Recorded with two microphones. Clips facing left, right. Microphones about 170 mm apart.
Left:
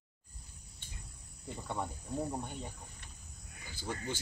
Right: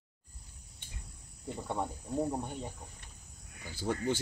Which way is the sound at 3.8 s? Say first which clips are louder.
Right 7 dB; 60° right (ahead or behind).